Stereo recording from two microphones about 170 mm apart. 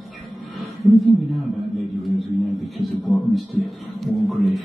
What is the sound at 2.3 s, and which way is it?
Speech, centre (ahead or behind).